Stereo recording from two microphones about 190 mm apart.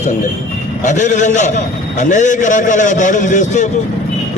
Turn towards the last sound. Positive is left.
turn(degrees=40)  # may be behind; listen again after turning